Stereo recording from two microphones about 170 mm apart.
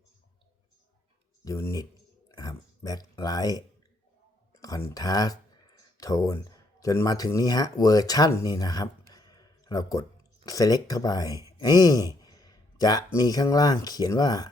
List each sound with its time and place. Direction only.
1.5 s speech: 15° left (ahead or behind)
4.9 s speech: 20° left (ahead or behind)
11.6 s a sound: 20° left (ahead or behind)
13.1 s speech: 20° left (ahead or behind)